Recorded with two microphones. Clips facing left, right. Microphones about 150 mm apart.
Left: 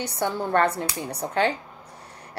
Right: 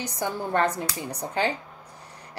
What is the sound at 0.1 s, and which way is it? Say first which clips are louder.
Speech: left 3 dB; 65° left (ahead or behind).